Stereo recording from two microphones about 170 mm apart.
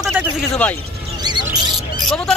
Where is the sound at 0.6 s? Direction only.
10° left (ahead or behind).